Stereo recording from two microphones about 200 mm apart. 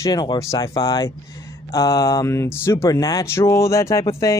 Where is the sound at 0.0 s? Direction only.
20° left (ahead or behind).